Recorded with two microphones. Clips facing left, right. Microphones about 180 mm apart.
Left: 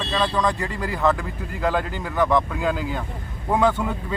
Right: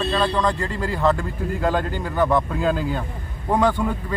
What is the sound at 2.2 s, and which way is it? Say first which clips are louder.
Speech: even; 5° right (ahead or behind).